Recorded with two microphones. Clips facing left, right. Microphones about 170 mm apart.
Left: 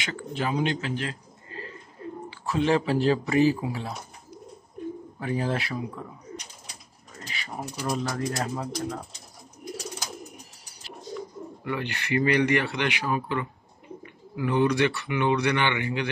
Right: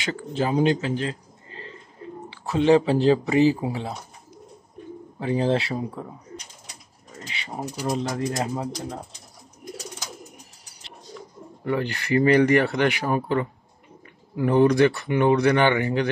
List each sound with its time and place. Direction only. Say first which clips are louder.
0.0 s a man's voice: right 4 dB; 35° right (ahead or behind)
5.2 s speech: right 6 dB; 25° right (ahead or behind)
7.2 s mechanisms: right 3 dB; 25° right (ahead or behind)
7.8 s speech: right 3 dB; 20° right (ahead or behind)
11.6 s speech: right 6 dB; 40° right (ahead or behind)